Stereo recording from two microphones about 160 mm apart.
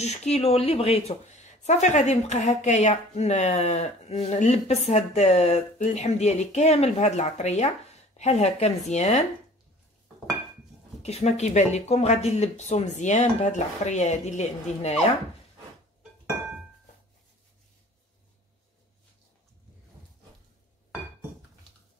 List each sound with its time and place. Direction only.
0.0 s speech: 45° left (ahead or behind)
11.0 s speech: 40° left (ahead or behind)